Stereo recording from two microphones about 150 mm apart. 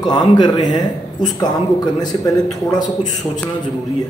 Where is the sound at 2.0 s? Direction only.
25° left (ahead or behind).